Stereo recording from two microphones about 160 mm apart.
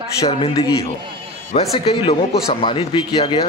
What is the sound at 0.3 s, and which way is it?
Speech, 40° left (ahead or behind).